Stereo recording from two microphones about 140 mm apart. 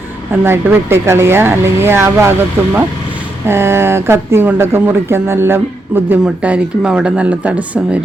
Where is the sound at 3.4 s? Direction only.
20° right (ahead or behind).